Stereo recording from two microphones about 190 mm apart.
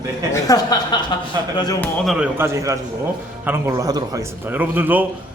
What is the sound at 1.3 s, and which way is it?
Speech, 20° right (ahead or behind).